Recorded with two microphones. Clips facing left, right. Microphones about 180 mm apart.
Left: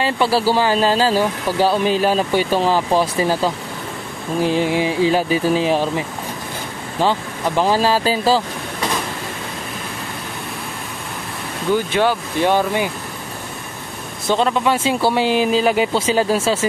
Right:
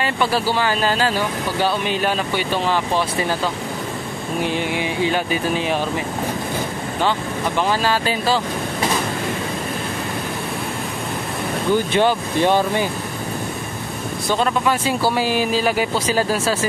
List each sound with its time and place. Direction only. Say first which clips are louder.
0.0 s speech: left 3 dB; 35° left (ahead or behind)
4.4 s speech: left 5 dB; 35° left (ahead or behind)
7.0 s speech: left 3 dB; 35° left (ahead or behind)
11.9 s speech: right 1 dB; 5° left (ahead or behind)
14.3 s speech: left 2 dB; 25° left (ahead or behind)